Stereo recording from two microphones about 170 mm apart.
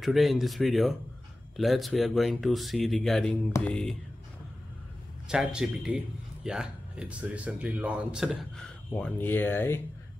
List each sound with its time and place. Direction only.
0.0 s speech: centre (ahead or behind)
5.3 s speech: 5° right (ahead or behind); by 9.8 s 15° left (ahead or behind)